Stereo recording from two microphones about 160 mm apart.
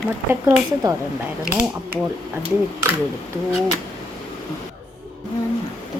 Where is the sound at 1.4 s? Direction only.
5° right (ahead or behind).